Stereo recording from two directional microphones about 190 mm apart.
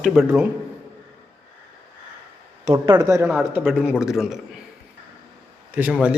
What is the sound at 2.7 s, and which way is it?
A man's voice, 20° right (ahead or behind).